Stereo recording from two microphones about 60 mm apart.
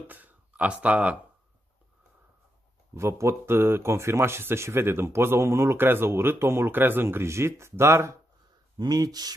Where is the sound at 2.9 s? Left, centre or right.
Right.